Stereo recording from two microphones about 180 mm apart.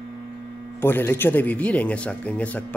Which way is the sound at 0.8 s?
10° left (ahead or behind).